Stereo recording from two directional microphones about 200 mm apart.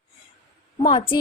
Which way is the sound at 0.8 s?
25° left (ahead or behind).